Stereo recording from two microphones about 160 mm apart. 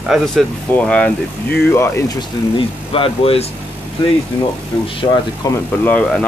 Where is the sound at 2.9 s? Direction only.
35° left (ahead or behind).